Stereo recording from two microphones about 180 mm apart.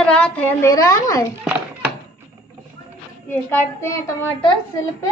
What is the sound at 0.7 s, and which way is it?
Speech, 20° left (ahead or behind).